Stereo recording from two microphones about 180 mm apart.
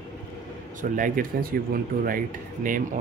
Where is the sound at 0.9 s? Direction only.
50° right (ahead or behind).